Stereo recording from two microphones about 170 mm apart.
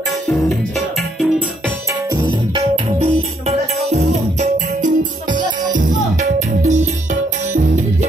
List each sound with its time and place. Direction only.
0.3 s music: centre (ahead or behind)
2.1 s music: 30° right (ahead or behind); by 6.9 s 45° right (ahead or behind)